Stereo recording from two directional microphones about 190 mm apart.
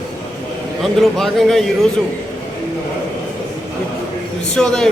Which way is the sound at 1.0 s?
Centre (ahead or behind).